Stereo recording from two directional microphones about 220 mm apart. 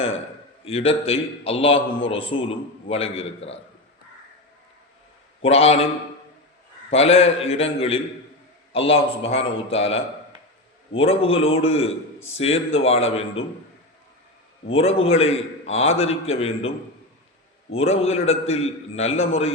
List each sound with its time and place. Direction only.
0.6 s a man's voice: 25° left (ahead or behind)
5.4 s a man's voice: 25° left (ahead or behind)
6.9 s a man's voice: 25° left (ahead or behind)
14.7 s a man's voice: 25° left (ahead or behind)